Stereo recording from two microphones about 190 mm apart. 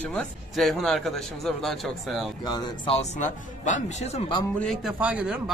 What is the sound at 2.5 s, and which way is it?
Speech, 25° left (ahead or behind).